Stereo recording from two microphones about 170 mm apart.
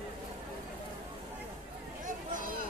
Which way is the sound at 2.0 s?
50° right (ahead or behind).